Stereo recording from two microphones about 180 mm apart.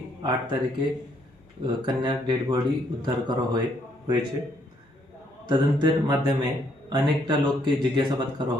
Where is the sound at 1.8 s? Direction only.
25° right (ahead or behind).